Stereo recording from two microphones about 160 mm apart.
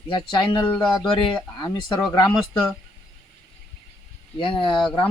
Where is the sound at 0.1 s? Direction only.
30° left (ahead or behind).